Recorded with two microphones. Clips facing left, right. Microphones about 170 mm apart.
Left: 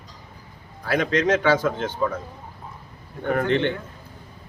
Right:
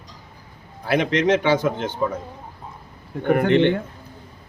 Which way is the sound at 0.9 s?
20° right (ahead or behind).